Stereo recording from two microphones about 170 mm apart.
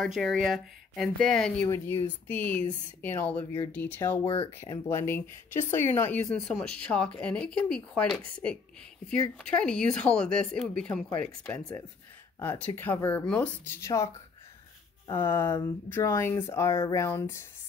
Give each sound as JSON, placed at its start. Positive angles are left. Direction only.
{"t": 0.0, "sound": "speech", "side_deg": 0}
{"t": 9.4, "sound": "speech", "side_deg": 5}
{"t": 11.4, "sound": "speech", "side_deg": 15}